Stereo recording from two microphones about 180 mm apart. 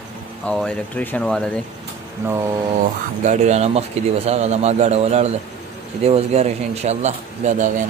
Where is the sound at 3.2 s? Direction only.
40° right (ahead or behind).